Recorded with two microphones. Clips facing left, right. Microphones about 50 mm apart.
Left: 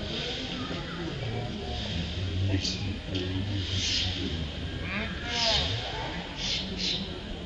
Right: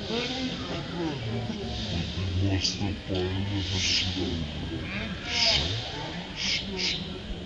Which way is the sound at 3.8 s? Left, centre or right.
Right.